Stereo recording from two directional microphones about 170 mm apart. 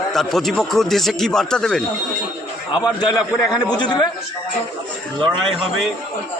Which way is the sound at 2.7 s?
25° left (ahead or behind).